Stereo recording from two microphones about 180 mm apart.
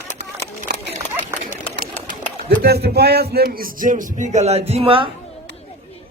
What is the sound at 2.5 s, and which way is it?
A man's voice, 65° right (ahead or behind).